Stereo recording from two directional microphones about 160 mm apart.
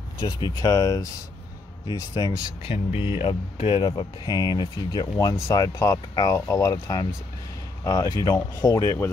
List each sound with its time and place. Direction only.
0.2 s speech: 25° left (ahead or behind)
2.7 s speech: 40° left (ahead or behind); by 9.1 s 20° left (ahead or behind)